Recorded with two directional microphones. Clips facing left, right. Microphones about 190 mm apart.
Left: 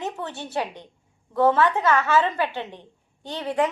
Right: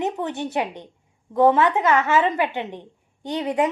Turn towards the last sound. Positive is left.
turn(degrees=-15)  # may be behind; listen again after turning